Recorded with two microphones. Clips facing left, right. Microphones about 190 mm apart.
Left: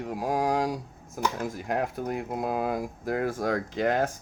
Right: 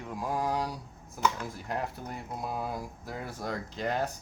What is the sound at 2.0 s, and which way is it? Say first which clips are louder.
Speech: left 8 dB; 70° left (ahead or behind).